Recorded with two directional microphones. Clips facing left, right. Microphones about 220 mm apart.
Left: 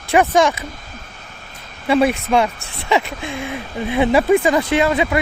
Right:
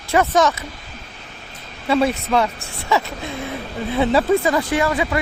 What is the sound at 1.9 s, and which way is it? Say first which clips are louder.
Speech: left 2 dB; 15° left (ahead or behind).